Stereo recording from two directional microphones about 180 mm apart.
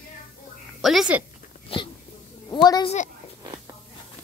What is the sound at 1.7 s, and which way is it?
Speech, 30° left (ahead or behind).